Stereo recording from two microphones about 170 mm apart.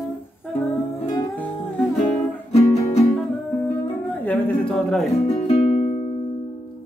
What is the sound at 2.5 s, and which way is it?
Music, 40° left (ahead or behind).